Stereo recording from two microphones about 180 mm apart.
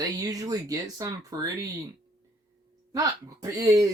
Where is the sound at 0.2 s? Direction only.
20° right (ahead or behind).